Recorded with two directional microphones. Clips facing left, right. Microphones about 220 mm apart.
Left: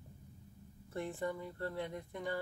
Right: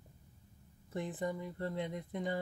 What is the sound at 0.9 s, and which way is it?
Speech, 20° right (ahead or behind).